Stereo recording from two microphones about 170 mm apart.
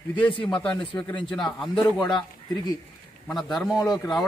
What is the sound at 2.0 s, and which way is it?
Speech, 25° left (ahead or behind).